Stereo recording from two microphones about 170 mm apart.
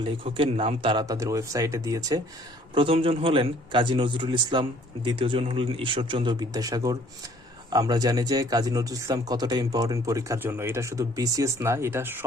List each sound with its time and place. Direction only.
0.0 s speech: 30° right (ahead or behind)
2.7 s speech: 30° right (ahead or behind); by 12.2 s 10° right (ahead or behind)